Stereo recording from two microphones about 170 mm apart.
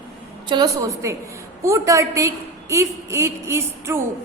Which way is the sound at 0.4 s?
25° right (ahead or behind).